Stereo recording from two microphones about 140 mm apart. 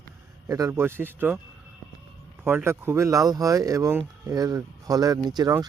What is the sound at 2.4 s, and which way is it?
Speech, 15° right (ahead or behind).